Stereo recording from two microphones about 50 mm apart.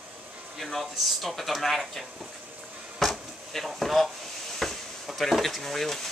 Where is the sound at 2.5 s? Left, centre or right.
Right.